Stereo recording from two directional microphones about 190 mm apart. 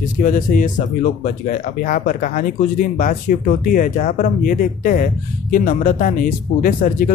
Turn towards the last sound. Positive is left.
turn(degrees=45)  # may be behind; listen again after turning